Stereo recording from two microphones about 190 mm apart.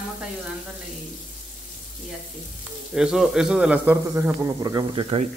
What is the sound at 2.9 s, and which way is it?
Speech, centre (ahead or behind).